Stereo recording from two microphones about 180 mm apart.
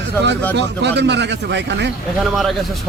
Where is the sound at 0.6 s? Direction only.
70° right (ahead or behind).